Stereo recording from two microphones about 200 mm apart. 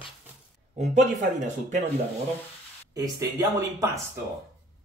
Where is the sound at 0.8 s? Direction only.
35° right (ahead or behind).